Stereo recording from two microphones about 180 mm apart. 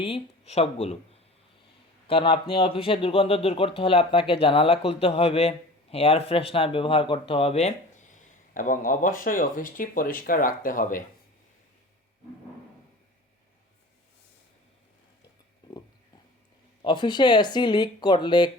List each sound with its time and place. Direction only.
0.0 s speech: 35° left (ahead or behind)
8.1 s speech: 45° left (ahead or behind)
15.6 s a sound: 25° left (ahead or behind)
16.8 s speech: 25° left (ahead or behind)